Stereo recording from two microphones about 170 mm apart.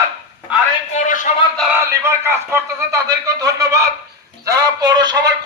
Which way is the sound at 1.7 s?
15° right (ahead or behind).